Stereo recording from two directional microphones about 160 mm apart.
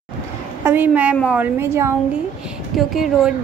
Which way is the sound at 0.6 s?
10° right (ahead or behind).